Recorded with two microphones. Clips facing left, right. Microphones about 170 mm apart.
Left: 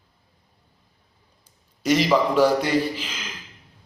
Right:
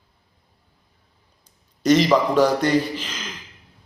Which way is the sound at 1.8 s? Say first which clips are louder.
Right 3 dB; 10° left (ahead or behind).